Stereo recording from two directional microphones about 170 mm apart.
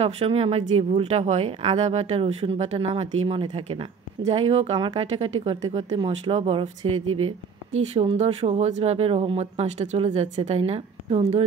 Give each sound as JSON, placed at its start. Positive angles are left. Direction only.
{"t": 0.0, "sound": "speech", "side_deg": -35}